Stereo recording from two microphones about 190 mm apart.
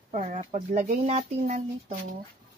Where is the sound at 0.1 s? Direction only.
40° right (ahead or behind).